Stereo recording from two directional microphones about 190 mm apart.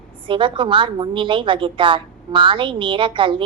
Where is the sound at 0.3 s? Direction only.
25° right (ahead or behind).